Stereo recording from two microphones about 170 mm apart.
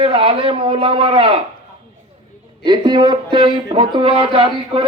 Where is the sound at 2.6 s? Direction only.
25° right (ahead or behind).